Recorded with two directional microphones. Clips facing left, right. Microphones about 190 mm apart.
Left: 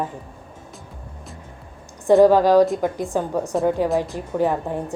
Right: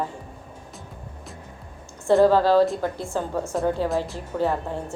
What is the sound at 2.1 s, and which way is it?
A woman's voice, 15° left (ahead or behind).